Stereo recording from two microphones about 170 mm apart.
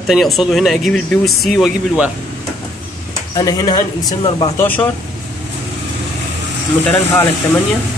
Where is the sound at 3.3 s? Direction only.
20° left (ahead or behind).